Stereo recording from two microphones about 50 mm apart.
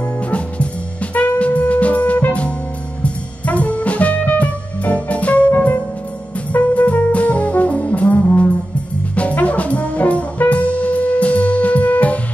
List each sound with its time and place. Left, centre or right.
1.1 s music: left
6.5 s brass instrument: left